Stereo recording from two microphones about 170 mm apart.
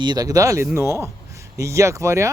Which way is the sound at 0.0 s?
25° right (ahead or behind).